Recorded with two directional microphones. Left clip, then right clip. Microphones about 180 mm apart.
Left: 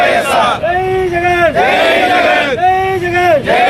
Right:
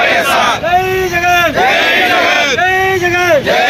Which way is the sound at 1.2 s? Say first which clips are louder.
Right 1 dB; 15° right (ahead or behind).